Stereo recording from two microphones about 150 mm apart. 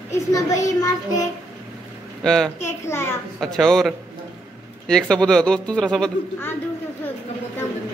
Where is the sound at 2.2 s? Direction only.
5° left (ahead or behind).